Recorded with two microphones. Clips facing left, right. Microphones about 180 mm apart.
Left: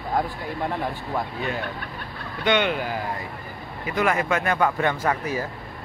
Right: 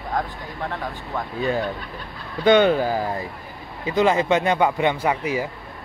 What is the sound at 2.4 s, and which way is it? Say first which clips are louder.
Speech: right 7 dB; 35° right (ahead or behind).